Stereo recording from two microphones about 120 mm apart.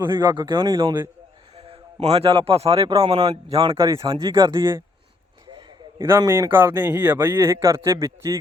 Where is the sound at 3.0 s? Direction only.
40° right (ahead or behind).